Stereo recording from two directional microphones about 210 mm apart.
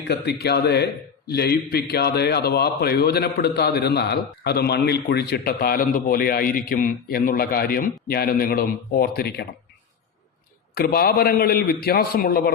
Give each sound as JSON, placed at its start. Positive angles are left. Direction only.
{"t": 0.1, "sound": "a man's voice", "side_deg": 50}
{"t": 10.8, "sound": "a man's voice", "side_deg": 50}